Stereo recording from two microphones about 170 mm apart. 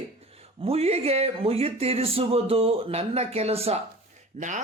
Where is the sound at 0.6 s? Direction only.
35° right (ahead or behind).